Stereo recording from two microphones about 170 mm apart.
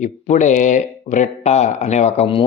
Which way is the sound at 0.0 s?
45° left (ahead or behind).